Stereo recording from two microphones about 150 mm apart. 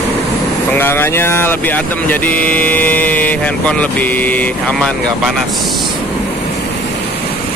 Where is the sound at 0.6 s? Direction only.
15° left (ahead or behind).